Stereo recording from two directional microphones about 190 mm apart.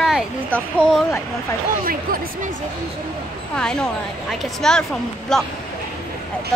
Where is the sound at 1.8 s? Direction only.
50° right (ahead or behind).